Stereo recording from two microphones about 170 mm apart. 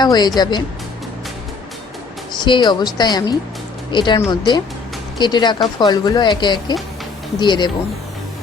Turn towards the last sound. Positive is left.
turn(degrees=25)  # may be behind; listen again after turning